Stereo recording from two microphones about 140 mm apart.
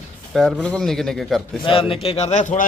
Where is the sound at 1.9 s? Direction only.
45° left (ahead or behind).